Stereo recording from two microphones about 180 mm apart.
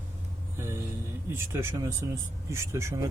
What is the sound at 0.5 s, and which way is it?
Music, 15° right (ahead or behind).